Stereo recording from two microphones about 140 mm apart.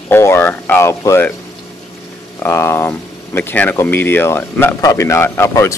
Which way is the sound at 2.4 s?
20° left (ahead or behind).